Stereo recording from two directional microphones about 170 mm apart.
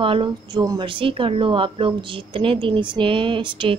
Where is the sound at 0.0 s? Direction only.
30° right (ahead or behind).